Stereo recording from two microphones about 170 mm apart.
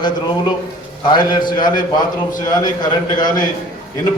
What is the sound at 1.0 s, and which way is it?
A man's voice, 25° left (ahead or behind).